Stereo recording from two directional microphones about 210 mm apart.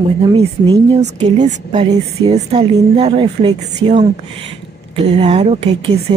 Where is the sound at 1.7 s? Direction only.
20° right (ahead or behind).